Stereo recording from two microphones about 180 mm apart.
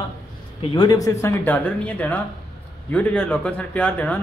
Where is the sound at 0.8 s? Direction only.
20° left (ahead or behind).